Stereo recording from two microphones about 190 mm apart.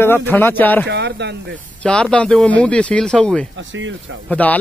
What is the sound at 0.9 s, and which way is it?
Speech, 60° right (ahead or behind).